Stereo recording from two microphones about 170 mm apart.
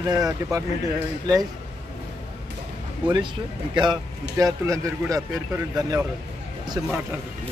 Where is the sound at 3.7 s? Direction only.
25° right (ahead or behind).